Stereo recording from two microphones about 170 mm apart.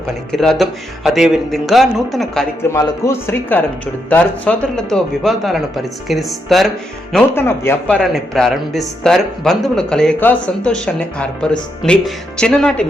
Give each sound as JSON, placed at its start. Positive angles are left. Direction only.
{"t": 0.3, "sound": "a man's voice", "side_deg": 0}
{"t": 2.7, "sound": "a man's voice", "side_deg": 15}
{"t": 7.1, "sound": "a man's voice", "side_deg": 15}